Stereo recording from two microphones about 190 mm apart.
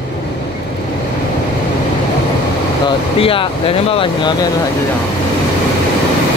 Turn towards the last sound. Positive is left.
turn(degrees=25)  # may be behind; listen again after turning